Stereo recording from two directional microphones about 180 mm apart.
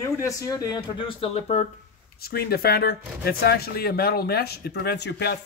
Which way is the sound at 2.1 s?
60° left (ahead or behind).